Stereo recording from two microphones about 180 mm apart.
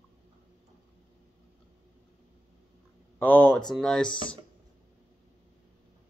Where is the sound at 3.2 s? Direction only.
10° left (ahead or behind).